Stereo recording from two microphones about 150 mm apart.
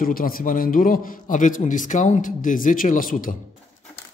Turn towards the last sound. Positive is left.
turn(degrees=65)  # may be behind; listen again after turning